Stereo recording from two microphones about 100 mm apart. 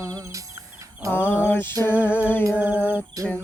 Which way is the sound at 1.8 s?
20° left (ahead or behind).